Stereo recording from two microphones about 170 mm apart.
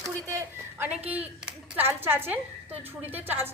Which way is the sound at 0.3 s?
20° right (ahead or behind).